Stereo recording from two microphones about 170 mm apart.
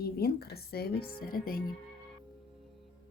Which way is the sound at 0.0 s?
70° left (ahead or behind).